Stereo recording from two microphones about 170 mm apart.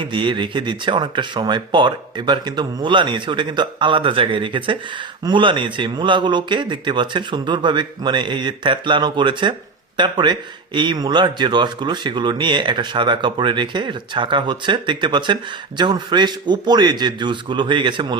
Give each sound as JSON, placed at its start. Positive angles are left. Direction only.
{"t": 0.0, "sound": "speech", "side_deg": -30}